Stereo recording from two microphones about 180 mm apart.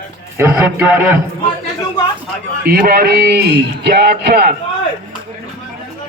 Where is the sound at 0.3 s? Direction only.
10° right (ahead or behind).